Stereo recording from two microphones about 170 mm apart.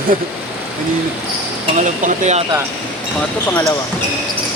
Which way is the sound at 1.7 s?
45° right (ahead or behind).